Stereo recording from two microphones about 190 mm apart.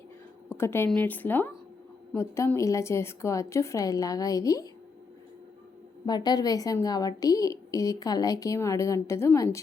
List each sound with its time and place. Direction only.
0.4 s a woman's voice: 10° left (ahead or behind)
6.1 s a woman's voice: 20° left (ahead or behind)